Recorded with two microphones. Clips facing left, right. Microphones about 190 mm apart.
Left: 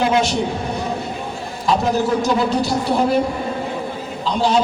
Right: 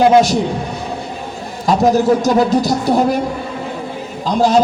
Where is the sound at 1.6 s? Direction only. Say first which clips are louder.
Right 6 dB; 40° right (ahead or behind).